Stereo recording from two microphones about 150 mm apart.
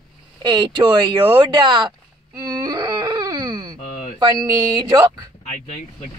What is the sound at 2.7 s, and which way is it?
Dog, 25° right (ahead or behind).